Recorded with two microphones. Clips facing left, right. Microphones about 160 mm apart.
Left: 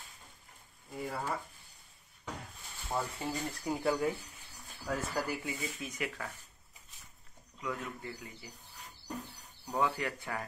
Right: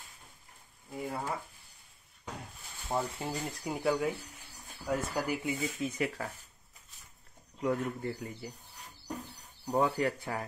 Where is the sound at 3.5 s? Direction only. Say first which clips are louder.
Right 2 dB; 5° right (ahead or behind).